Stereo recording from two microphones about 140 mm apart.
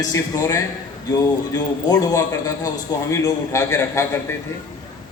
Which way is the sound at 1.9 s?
25° left (ahead or behind).